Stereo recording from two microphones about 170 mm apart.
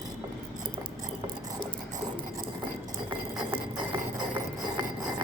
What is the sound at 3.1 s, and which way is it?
Chink, 25° right (ahead or behind).